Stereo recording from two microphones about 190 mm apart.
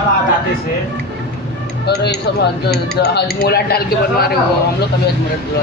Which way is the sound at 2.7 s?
60° left (ahead or behind).